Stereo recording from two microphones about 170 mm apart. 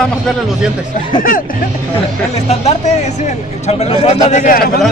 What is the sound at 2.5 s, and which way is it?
A man's voice, 35° left (ahead or behind).